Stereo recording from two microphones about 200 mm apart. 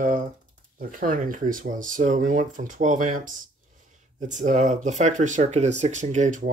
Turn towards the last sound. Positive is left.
turn(degrees=-40)  # may be behind; listen again after turning